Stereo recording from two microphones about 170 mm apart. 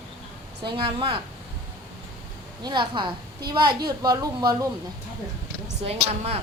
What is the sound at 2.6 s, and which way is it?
A woman's voice, 25° right (ahead or behind).